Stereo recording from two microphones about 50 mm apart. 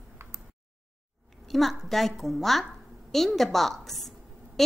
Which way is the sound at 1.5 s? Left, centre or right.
Centre.